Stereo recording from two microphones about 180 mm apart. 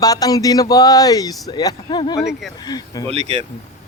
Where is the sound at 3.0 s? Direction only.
35° right (ahead or behind).